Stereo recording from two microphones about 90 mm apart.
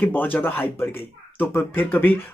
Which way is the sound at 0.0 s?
20° left (ahead or behind).